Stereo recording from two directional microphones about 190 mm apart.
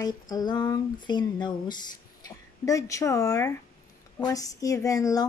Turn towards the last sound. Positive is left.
turn(degrees=20)  # may be behind; listen again after turning